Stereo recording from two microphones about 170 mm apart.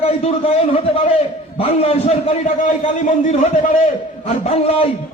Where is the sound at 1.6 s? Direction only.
35° left (ahead or behind).